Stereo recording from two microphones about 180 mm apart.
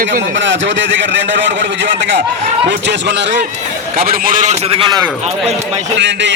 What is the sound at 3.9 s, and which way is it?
Speech, 55° right (ahead or behind).